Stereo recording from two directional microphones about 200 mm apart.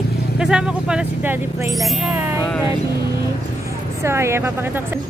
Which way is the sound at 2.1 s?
10° right (ahead or behind).